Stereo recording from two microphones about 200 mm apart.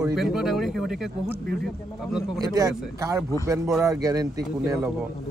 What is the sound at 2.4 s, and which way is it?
Speech, 15° right (ahead or behind).